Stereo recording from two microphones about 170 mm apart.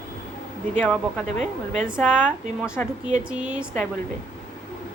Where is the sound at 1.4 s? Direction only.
45° right (ahead or behind).